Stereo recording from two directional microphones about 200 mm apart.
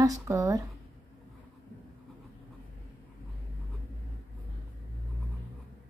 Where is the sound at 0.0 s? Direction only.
15° right (ahead or behind).